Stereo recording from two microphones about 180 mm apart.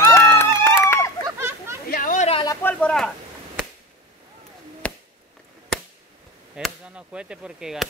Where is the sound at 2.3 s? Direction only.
25° left (ahead or behind).